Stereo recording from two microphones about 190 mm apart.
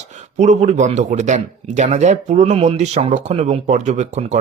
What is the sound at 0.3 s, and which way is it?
Speech, 40° right (ahead or behind).